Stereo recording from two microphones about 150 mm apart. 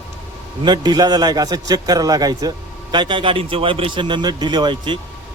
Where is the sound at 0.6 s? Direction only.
30° right (ahead or behind).